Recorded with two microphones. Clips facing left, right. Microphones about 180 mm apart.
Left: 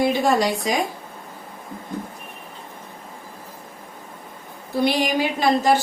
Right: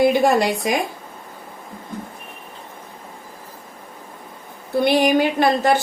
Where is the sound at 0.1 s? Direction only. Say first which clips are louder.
Right 3 dB; 60° right (ahead or behind).